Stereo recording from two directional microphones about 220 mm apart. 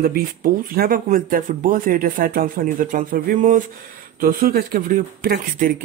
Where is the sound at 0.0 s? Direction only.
40° right (ahead or behind).